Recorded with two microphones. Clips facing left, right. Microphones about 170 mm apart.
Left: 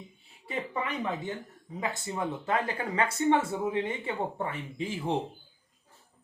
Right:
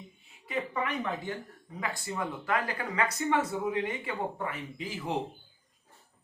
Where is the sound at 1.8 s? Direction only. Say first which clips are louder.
Left 2 dB; 20° left (ahead or behind).